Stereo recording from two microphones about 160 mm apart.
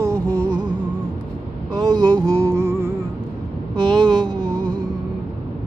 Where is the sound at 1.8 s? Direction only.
25° right (ahead or behind).